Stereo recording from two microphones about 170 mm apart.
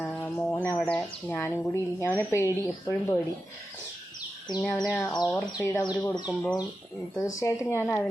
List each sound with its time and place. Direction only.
0.0 s speech: 10° left (ahead or behind)
4.6 s speech: 10° left (ahead or behind)